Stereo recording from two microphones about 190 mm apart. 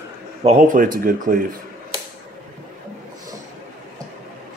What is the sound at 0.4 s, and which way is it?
Speech, 40° right (ahead or behind).